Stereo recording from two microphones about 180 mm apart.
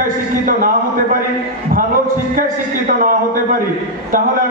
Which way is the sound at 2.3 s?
50° right (ahead or behind).